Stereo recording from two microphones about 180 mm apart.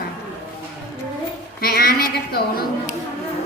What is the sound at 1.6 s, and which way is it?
A woman's voice, 60° left (ahead or behind).